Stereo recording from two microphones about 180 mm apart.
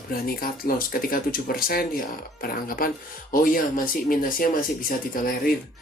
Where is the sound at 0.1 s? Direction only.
55° left (ahead or behind).